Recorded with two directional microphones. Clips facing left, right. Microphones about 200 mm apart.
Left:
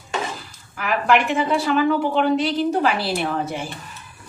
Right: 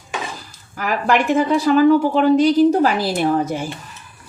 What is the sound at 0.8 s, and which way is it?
A woman's voice, 40° right (ahead or behind).